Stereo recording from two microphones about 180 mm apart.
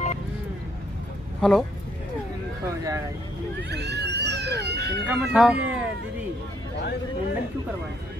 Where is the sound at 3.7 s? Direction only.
70° right (ahead or behind).